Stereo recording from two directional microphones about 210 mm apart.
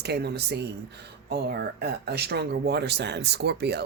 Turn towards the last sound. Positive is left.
turn(degrees=-50)  # may be behind; listen again after turning